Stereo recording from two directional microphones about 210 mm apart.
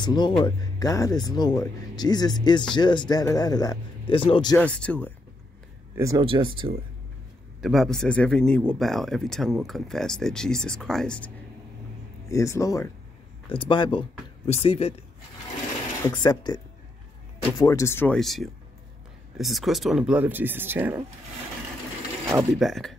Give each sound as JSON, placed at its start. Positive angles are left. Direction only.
{"t": 0.0, "sound": "speech", "side_deg": 20}
{"t": 4.6, "sound": "speech", "side_deg": 5}
{"t": 5.9, "sound": "speech", "side_deg": -15}
{"t": 7.6, "sound": "speech", "side_deg": 0}
{"t": 16.1, "sound": "speech", "side_deg": 20}
{"t": 22.2, "sound": "mechanisms", "side_deg": -15}
{"t": 22.5, "sound": "speech", "side_deg": 0}